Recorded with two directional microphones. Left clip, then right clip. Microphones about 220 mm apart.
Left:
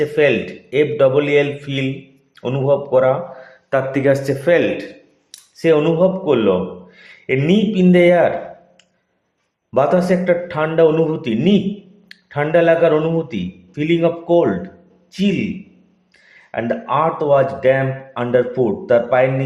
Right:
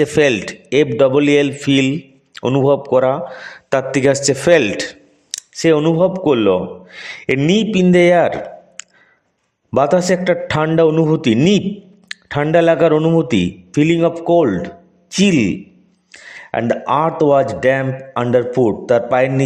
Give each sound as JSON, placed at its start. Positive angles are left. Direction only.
{"t": 0.0, "sound": "speech", "side_deg": -50}
{"t": 8.8, "sound": "a sound", "side_deg": -50}
{"t": 9.7, "sound": "speech", "side_deg": -50}